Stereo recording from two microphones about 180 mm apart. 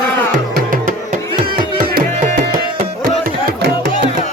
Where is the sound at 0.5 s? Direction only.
50° right (ahead or behind).